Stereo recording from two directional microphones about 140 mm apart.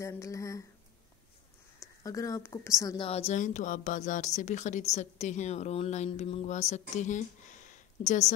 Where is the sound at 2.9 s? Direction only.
45° left (ahead or behind).